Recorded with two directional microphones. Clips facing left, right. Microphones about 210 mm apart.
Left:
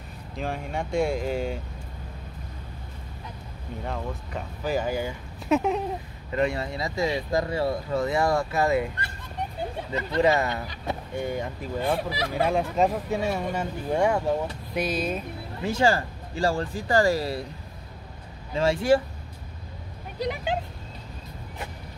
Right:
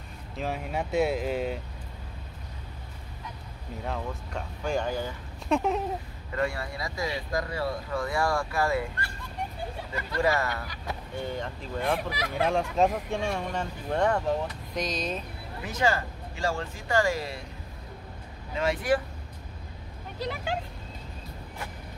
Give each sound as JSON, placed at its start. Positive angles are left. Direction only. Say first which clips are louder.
{"t": 0.4, "sound": "speech", "louder": "left 1 dB", "side_deg": -5}
{"t": 3.8, "sound": "speech", "louder": "left 1 dB", "side_deg": 0}
{"t": 6.3, "sound": "speech", "louder": "left 4 dB", "side_deg": 20}
{"t": 11.2, "sound": "speech", "louder": "left 4 dB", "side_deg": 10}
{"t": 11.9, "sound": "speech", "louder": "left 2 dB", "side_deg": 30}
{"t": 12.4, "sound": "speech", "louder": "left 1 dB", "side_deg": 0}
{"t": 15.6, "sound": "speech", "louder": "left 4 dB", "side_deg": 30}
{"t": 18.5, "sound": "speech", "louder": "left 5 dB", "side_deg": 30}
{"t": 20.2, "sound": "speech", "louder": "left 4 dB", "side_deg": 15}